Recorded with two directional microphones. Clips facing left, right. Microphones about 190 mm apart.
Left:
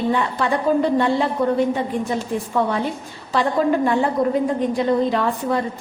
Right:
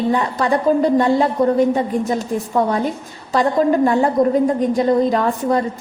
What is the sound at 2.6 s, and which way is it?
A woman's voice, 45° right (ahead or behind).